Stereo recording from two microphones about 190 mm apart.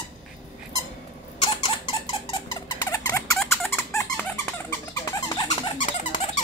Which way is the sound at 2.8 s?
15° left (ahead or behind).